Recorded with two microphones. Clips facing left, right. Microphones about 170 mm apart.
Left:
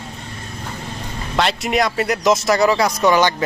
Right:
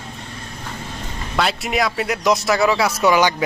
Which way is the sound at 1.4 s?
Centre (ahead or behind).